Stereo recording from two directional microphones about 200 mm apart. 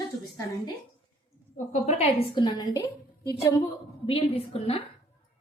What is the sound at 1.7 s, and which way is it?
A woman's voice, 30° left (ahead or behind).